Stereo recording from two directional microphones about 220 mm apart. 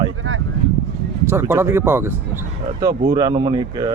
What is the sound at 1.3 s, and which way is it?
Speech, 10° right (ahead or behind).